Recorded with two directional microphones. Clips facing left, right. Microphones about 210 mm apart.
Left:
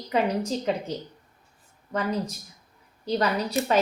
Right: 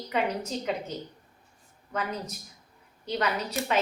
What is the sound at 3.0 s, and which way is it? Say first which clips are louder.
Speech: left 4 dB; 35° left (ahead or behind).